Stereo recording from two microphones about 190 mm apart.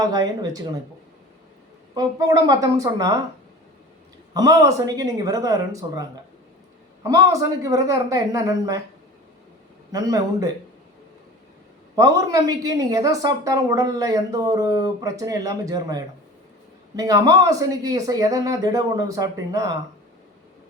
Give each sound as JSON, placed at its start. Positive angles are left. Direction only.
{"t": 0.1, "sound": "a woman's voice", "side_deg": -20}
{"t": 2.0, "sound": "a woman's voice", "side_deg": -20}
{"t": 4.4, "sound": "a woman's voice", "side_deg": -20}
{"t": 9.9, "sound": "a woman's voice", "side_deg": -20}
{"t": 11.9, "sound": "a woman's voice", "side_deg": -20}